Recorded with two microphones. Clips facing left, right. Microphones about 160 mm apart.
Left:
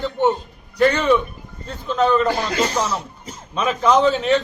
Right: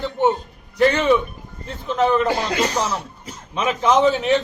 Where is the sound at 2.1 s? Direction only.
10° right (ahead or behind).